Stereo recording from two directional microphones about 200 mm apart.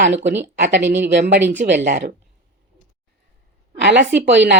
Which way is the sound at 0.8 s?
10° right (ahead or behind).